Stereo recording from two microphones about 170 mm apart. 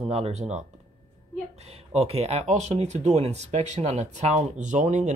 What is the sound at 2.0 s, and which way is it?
Speech, 35° right (ahead or behind).